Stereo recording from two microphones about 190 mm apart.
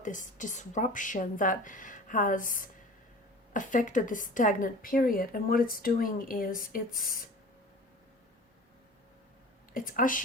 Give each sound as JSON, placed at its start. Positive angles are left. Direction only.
{"t": 0.0, "sound": "a woman's voice", "side_deg": 40}
{"t": 9.7, "sound": "a woman's voice", "side_deg": 45}